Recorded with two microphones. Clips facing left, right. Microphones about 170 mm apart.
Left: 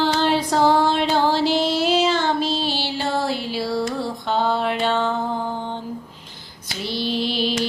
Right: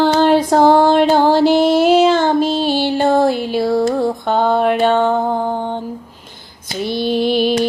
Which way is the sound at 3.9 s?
50° right (ahead or behind).